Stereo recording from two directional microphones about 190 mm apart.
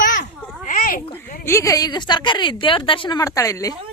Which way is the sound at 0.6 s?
45° left (ahead or behind).